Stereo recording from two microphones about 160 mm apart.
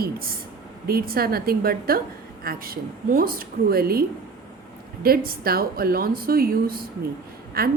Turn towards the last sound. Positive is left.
turn(degrees=-70)  # may be behind; listen again after turning